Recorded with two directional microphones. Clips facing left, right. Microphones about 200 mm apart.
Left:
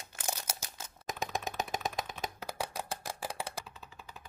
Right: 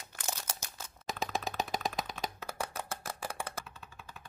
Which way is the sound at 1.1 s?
Centre (ahead or behind).